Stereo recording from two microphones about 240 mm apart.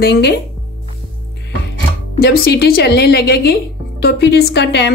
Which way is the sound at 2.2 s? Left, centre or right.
Left.